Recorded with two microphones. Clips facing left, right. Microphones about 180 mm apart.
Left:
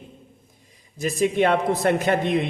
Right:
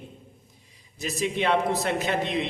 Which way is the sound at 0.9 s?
50° left (ahead or behind).